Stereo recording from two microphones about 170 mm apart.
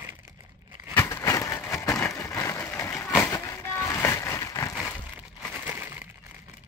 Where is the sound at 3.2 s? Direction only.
15° left (ahead or behind).